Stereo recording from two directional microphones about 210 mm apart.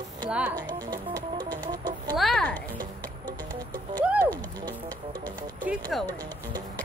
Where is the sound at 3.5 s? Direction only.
10° left (ahead or behind).